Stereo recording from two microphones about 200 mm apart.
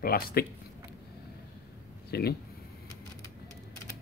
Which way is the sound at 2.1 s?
50° left (ahead or behind).